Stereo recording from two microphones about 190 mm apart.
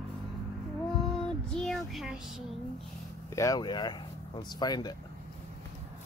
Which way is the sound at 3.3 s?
20° left (ahead or behind).